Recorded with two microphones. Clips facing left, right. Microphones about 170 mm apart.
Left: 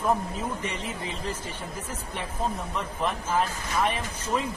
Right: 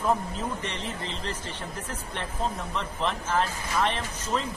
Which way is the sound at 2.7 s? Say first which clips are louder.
Even; 10° left (ahead or behind).